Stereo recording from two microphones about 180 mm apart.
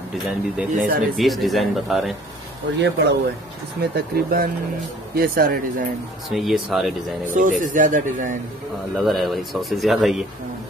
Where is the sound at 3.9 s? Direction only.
55° right (ahead or behind).